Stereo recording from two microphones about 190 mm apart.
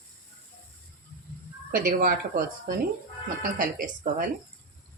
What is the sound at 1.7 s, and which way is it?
Speech, 50° right (ahead or behind).